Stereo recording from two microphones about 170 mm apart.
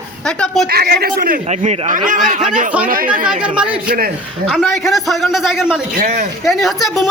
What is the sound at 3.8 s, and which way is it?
Speech, 60° right (ahead or behind).